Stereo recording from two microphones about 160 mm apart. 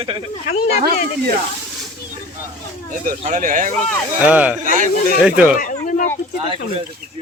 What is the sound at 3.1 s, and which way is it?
Speech, 55° right (ahead or behind).